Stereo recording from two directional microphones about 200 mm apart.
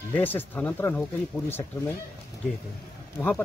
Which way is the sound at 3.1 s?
10° left (ahead or behind).